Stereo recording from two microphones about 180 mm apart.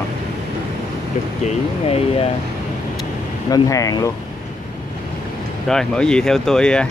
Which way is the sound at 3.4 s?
20° left (ahead or behind).